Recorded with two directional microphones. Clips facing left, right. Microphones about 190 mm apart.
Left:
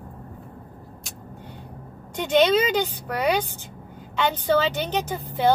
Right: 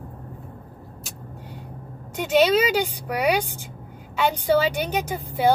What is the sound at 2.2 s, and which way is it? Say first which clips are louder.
Speech: even; 5° right (ahead or behind).